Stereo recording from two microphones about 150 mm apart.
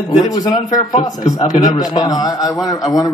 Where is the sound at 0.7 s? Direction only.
55° left (ahead or behind).